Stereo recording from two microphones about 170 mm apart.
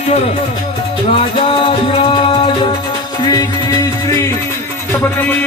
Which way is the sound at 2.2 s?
30° left (ahead or behind).